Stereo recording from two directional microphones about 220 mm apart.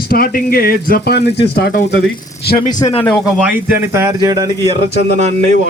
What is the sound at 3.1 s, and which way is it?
Speech, 5° right (ahead or behind).